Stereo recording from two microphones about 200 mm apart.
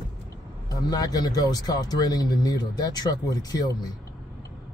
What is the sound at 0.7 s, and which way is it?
Speech, 20° left (ahead or behind).